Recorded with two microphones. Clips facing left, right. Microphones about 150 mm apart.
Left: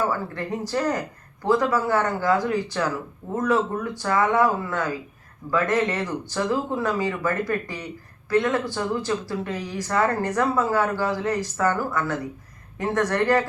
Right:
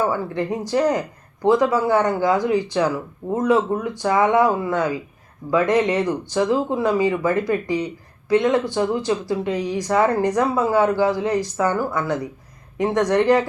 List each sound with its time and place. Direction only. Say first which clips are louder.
0.7 s speech: right 6 dB; 15° right (ahead or behind)